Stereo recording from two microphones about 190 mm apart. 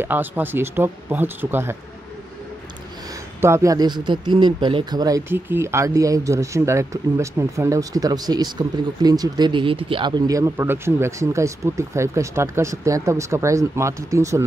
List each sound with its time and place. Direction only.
0.0 s a man's voice: 10° right (ahead or behind)
3.3 s a man's voice: 15° right (ahead or behind)